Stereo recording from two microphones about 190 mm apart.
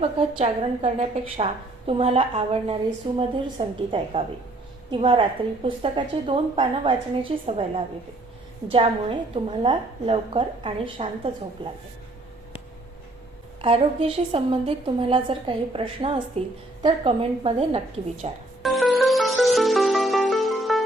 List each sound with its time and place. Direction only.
0.0 s a woman's voice: 30° right (ahead or behind)
13.6 s a woman's voice: 30° right (ahead or behind)
18.6 s music: centre (ahead or behind)